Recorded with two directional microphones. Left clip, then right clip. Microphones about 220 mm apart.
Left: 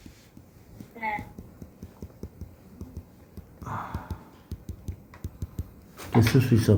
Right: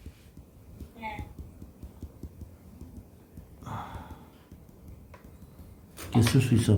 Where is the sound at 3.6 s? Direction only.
5° right (ahead or behind).